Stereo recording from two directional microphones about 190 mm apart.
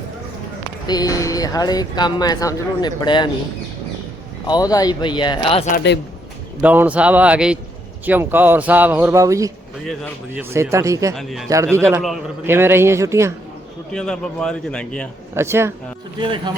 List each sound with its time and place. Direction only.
0.9 s speech: 20° left (ahead or behind)
4.4 s speech: 20° left (ahead or behind)
6.6 s speech: 10° right (ahead or behind)
9.8 s a man's voice: 5° left (ahead or behind)
10.5 s speech: 15° right (ahead or behind)
11.1 s a man's voice: centre (ahead or behind)
11.4 s speech: 15° right (ahead or behind)
13.9 s a man's voice: 5° left (ahead or behind)
15.4 s speech: 15° right (ahead or behind)
16.2 s speech: 25° right (ahead or behind)